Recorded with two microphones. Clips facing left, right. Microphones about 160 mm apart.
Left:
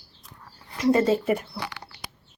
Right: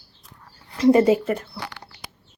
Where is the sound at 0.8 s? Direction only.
20° right (ahead or behind).